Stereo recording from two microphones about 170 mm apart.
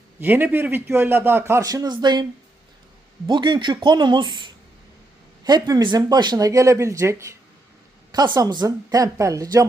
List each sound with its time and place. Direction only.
0.2 s a man's voice: 10° right (ahead or behind)
3.2 s speech: 25° right (ahead or behind)